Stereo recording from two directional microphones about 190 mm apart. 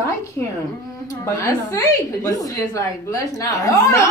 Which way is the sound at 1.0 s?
15° left (ahead or behind).